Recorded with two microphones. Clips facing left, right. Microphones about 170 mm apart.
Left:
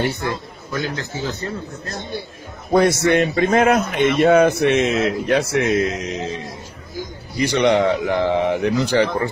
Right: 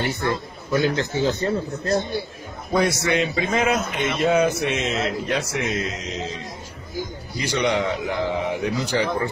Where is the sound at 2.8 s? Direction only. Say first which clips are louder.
Left 5 dB; 50° left (ahead or behind).